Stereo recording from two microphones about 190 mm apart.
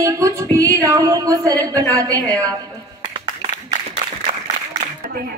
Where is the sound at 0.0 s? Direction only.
15° right (ahead or behind).